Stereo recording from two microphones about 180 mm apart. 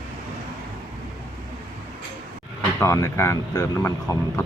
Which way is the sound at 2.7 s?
15° left (ahead or behind).